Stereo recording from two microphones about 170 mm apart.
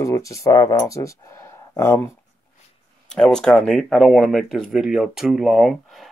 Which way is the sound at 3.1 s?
5° left (ahead or behind).